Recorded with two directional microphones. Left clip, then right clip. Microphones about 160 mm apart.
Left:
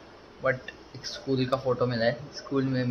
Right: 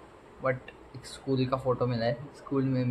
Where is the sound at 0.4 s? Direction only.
10° right (ahead or behind).